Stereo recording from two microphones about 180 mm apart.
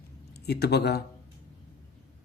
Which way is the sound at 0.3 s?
65° left (ahead or behind).